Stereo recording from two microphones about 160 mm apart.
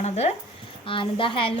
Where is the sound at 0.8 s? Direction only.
35° left (ahead or behind).